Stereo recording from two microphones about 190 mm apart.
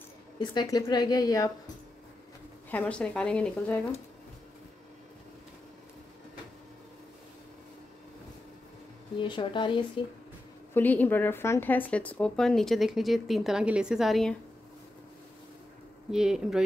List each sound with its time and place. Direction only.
0.4 s a woman's voice: 20° left (ahead or behind)
2.7 s speech: 10° left (ahead or behind)
9.2 s a woman's voice: 25° left (ahead or behind)
10.7 s speech: 10° left (ahead or behind)
16.1 s speech: 5° right (ahead or behind)